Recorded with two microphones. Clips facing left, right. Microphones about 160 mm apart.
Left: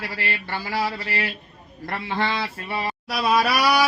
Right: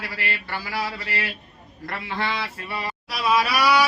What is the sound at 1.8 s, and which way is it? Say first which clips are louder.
Speech: left 3 dB; 30° left (ahead or behind).